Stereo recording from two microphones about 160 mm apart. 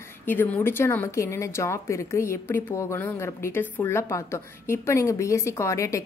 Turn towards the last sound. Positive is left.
turn(degrees=20)  # may be behind; listen again after turning